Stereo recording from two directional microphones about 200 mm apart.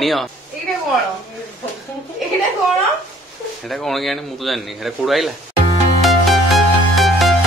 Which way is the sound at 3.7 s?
Centre (ahead or behind).